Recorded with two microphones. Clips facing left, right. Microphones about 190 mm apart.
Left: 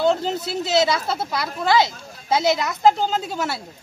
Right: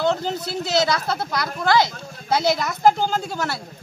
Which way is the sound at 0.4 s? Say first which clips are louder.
Left 2 dB; 25° left (ahead or behind).